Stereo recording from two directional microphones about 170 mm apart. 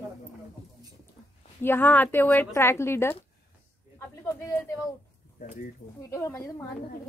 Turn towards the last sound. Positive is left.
turn(degrees=15)  # may be behind; listen again after turning